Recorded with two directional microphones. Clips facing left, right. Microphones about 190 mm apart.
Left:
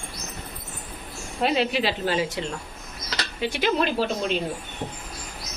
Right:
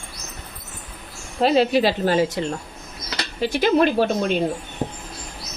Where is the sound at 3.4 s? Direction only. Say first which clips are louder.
Right 6 dB; 50° right (ahead or behind).